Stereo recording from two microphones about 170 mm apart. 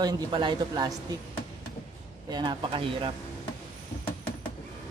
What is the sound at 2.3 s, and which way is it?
Speech, 25° right (ahead or behind).